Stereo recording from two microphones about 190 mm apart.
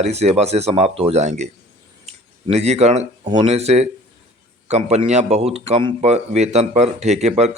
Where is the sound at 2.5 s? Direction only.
35° right (ahead or behind).